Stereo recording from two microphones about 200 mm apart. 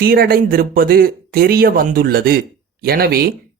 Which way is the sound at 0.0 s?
50° right (ahead or behind).